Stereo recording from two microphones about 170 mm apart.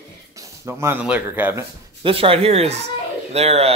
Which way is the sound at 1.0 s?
10° right (ahead or behind).